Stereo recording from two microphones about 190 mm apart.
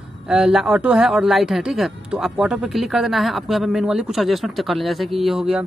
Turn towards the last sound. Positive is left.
turn(degrees=0)  # may be behind; listen again after turning